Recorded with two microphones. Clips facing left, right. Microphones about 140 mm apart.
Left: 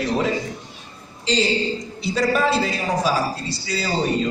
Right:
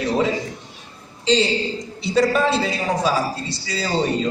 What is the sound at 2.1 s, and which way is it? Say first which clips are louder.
Speech: right 2 dB; centre (ahead or behind).